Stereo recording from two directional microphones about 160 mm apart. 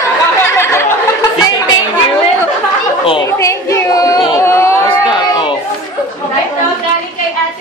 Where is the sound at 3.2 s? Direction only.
20° left (ahead or behind).